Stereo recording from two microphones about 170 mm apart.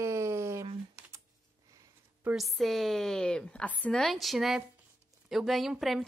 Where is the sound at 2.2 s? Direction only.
5° right (ahead or behind).